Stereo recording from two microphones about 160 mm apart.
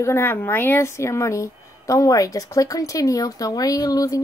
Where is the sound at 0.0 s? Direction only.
15° left (ahead or behind).